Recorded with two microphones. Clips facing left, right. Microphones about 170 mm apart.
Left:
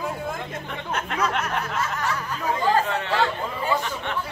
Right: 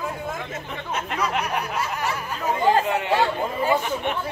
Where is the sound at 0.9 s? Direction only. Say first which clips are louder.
Even; 5° right (ahead or behind).